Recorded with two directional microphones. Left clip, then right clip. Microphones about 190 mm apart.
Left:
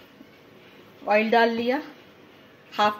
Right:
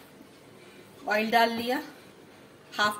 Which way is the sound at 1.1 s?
30° left (ahead or behind).